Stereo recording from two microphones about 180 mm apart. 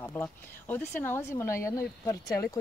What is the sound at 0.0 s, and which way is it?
Speech, 10° left (ahead or behind).